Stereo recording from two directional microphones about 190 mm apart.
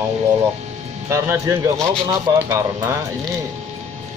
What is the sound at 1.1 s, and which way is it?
Speech, 15° right (ahead or behind).